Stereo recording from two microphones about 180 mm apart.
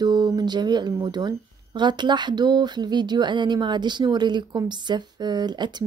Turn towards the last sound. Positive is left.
turn(degrees=-25)  # may be behind; listen again after turning